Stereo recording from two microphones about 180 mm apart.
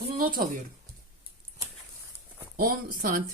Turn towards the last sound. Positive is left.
turn(degrees=-50)  # may be behind; listen again after turning